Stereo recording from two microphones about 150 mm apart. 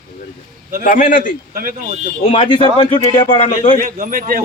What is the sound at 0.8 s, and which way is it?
Speech, 65° left (ahead or behind).